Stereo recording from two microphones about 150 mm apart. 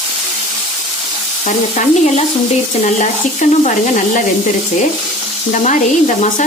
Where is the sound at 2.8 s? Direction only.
55° left (ahead or behind).